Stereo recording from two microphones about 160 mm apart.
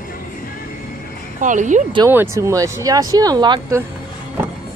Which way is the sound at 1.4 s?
50° right (ahead or behind).